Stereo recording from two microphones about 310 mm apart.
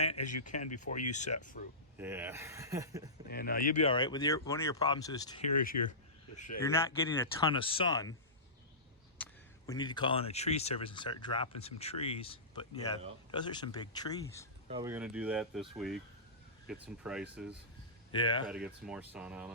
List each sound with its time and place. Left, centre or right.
0.4 s speech: left
2.0 s speech: centre
3.2 s speech: left
3.8 s speech: centre
5.5 s speech: left
6.6 s speech: centre
9.1 s speech: centre
14.7 s speech: centre
18.1 s speech: centre
18.4 s speech: centre